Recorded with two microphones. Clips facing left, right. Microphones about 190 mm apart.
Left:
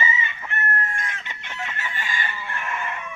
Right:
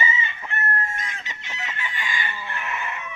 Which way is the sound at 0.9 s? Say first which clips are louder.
Left 1 dB; 55° left (ahead or behind).